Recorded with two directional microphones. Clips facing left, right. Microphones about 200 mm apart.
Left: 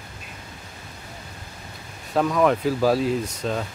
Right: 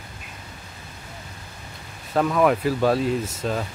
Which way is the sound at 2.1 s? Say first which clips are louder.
Even; 5° right (ahead or behind).